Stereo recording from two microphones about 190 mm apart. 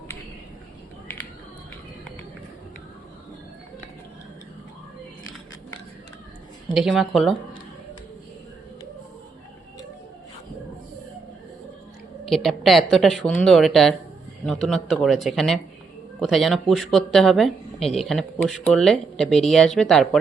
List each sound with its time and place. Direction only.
6.7 s speech: centre (ahead or behind)
12.3 s speech: centre (ahead or behind)